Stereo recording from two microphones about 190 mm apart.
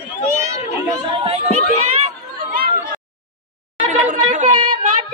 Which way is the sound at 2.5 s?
50° right (ahead or behind).